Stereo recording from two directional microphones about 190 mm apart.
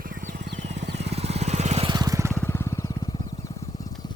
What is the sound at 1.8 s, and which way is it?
Lawn mower, 20° right (ahead or behind).